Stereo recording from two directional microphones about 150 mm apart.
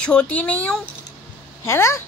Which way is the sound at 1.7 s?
20° left (ahead or behind).